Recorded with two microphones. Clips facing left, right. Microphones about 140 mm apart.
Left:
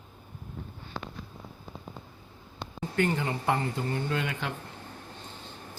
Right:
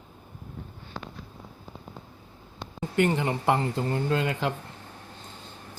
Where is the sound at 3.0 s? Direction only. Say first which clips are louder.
Right 4 dB; 20° right (ahead or behind).